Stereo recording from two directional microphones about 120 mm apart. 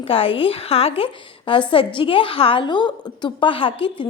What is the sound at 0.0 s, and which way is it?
A woman's voice, 50° left (ahead or behind).